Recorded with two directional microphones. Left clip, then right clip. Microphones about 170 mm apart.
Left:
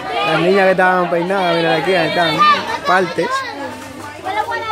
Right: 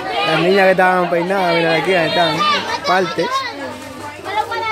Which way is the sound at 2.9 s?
Centre (ahead or behind).